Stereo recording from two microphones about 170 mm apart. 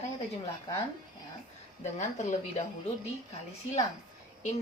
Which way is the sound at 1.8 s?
45° left (ahead or behind).